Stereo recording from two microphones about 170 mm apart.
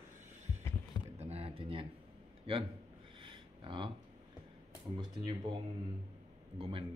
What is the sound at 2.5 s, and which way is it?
Speech, 35° right (ahead or behind).